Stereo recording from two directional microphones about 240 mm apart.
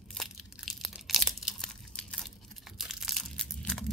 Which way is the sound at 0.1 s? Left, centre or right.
Centre.